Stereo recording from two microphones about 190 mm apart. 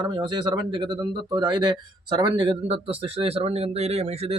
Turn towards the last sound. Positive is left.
turn(degrees=-35)  # may be behind; listen again after turning